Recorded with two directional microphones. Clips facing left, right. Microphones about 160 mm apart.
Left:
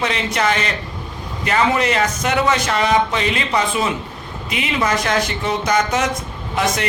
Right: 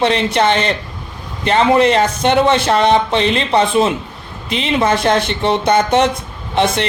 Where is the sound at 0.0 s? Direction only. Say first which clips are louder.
Right 6 dB; 30° right (ahead or behind).